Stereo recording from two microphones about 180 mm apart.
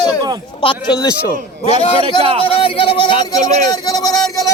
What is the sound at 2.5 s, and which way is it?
Speech, 30° left (ahead or behind).